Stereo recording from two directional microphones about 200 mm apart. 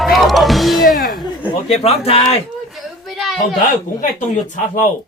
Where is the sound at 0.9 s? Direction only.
45° left (ahead or behind).